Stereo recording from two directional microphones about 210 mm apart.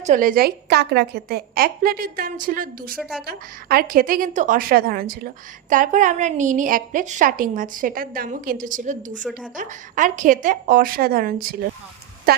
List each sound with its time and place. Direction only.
0.0 s a woman's voice: 40° right (ahead or behind)
3.0 s a woman's voice: centre (ahead or behind)
3.2 s a woman's voice: 45° right (ahead or behind)